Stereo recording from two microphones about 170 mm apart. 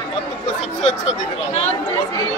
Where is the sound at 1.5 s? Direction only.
40° left (ahead or behind).